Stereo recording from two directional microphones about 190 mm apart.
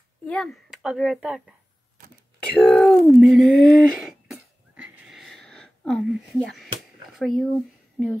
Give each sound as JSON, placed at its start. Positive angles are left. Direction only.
{"t": 0.3, "sound": "speech", "side_deg": 0}
{"t": 2.5, "sound": "speech", "side_deg": 5}
{"t": 4.8, "sound": "a sound", "side_deg": -5}
{"t": 8.0, "sound": "speech", "side_deg": 5}